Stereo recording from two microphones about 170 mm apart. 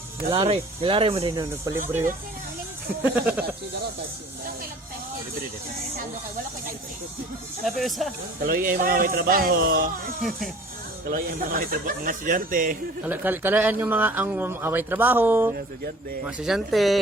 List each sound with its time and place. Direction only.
0.3 s speech: 35° right (ahead or behind)
1.4 s speech: 20° right (ahead or behind)
3.0 s speech: 10° right (ahead or behind)
7.6 s speech: centre (ahead or behind)
8.4 s speech: 60° right (ahead or behind)
11.1 s speech: 55° right (ahead or behind)
13.1 s speech: 10° right (ahead or behind)